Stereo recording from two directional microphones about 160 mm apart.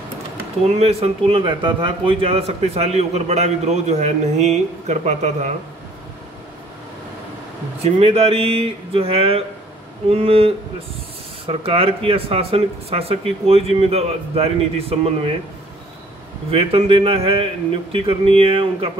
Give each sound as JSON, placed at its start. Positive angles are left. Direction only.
{"t": 0.7, "sound": "a man's voice", "side_deg": -40}
{"t": 7.8, "sound": "speech", "side_deg": -40}
{"t": 16.4, "sound": "speech", "side_deg": -35}